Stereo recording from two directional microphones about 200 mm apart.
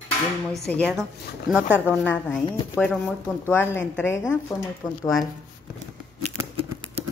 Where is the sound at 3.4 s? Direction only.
10° left (ahead or behind).